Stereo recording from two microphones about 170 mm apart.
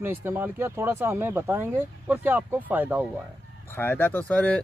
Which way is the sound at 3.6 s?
10° left (ahead or behind).